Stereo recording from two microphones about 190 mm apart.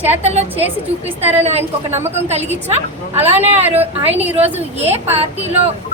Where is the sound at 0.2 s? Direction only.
35° right (ahead or behind).